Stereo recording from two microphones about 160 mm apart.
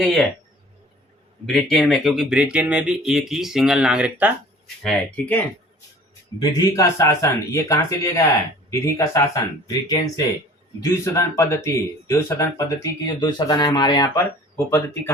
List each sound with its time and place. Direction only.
0.0 s speech: centre (ahead or behind)
1.5 s speech: centre (ahead or behind)
4.8 s speech: 5° left (ahead or behind)
6.7 s speech: 20° left (ahead or behind)
11.0 s speech: 20° left (ahead or behind)
14.5 s speech: 15° left (ahead or behind)